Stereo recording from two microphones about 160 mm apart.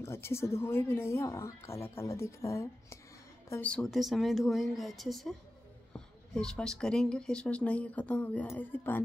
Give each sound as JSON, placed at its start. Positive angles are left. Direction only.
{"t": 0.0, "sound": "speech", "side_deg": 15}
{"t": 5.9, "sound": "a sound", "side_deg": 5}
{"t": 6.8, "sound": "speech", "side_deg": 5}